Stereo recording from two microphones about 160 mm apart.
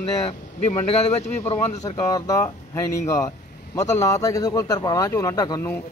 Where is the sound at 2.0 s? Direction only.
20° left (ahead or behind).